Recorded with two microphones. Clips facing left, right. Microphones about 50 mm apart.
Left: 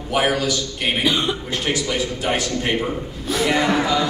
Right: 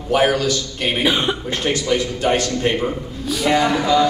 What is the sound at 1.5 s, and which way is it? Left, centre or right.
Speech, right.